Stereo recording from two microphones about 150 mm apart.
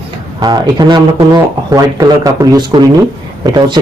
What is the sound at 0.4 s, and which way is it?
A man's voice, 30° right (ahead or behind).